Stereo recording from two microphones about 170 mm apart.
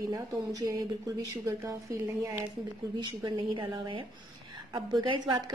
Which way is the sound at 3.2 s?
30° right (ahead or behind).